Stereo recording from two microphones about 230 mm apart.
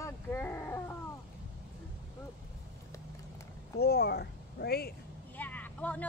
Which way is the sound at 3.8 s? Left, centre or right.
Left.